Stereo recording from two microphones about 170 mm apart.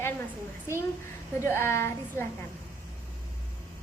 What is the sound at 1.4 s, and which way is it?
Speech, 15° left (ahead or behind).